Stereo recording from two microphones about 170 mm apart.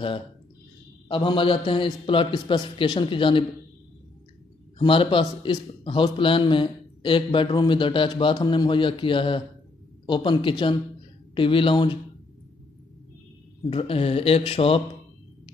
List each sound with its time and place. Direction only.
1.0 s a man's voice: 30° left (ahead or behind)
4.7 s a man's voice: 30° left (ahead or behind)
13.7 s speech: 35° left (ahead or behind)